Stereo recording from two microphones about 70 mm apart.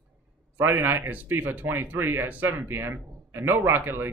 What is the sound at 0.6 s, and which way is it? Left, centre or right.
Speech, right.